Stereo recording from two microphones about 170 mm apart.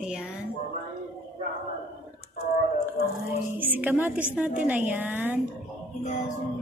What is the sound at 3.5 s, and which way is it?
A woman's voice, 10° right (ahead or behind).